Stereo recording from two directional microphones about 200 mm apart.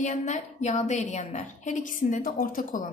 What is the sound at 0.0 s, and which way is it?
A woman's voice, 40° left (ahead or behind).